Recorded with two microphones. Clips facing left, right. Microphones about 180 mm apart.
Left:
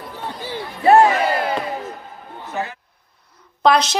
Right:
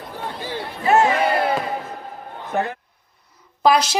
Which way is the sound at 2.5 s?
55° right (ahead or behind).